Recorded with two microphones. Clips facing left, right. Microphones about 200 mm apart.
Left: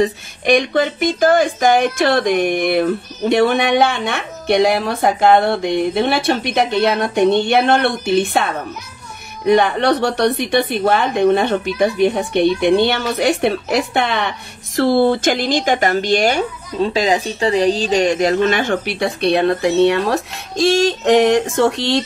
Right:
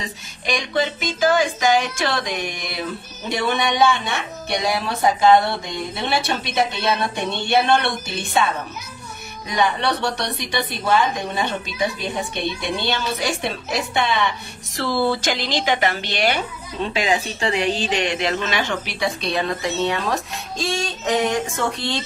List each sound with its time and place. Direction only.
0.0 s speech: 60° left (ahead or behind)
9.5 s speech: 60° left (ahead or behind)
14.8 s a woman's voice: 50° left (ahead or behind); by 22.0 s 80° left